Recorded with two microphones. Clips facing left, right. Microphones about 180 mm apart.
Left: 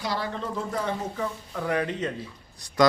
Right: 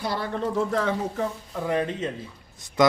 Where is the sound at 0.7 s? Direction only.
90° right.